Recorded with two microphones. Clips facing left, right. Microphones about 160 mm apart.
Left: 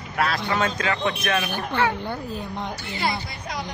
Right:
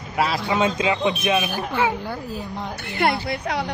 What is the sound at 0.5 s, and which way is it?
Speech, 15° right (ahead or behind).